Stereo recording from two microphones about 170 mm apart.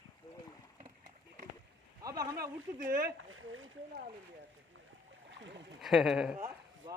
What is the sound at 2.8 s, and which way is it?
Speech, 55° right (ahead or behind).